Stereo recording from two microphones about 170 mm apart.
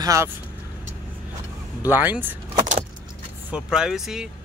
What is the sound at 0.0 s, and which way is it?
Speech, 20° right (ahead or behind).